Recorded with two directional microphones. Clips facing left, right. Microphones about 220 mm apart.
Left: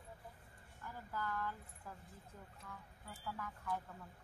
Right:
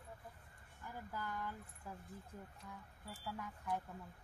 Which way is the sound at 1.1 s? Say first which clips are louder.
Left 3 dB; 15° right (ahead or behind).